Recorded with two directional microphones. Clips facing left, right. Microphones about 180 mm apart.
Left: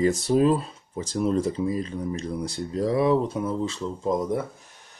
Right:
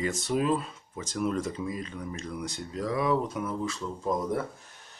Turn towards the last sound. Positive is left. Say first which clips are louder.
# left 4 dB
turn(degrees=25)  # may be behind; listen again after turning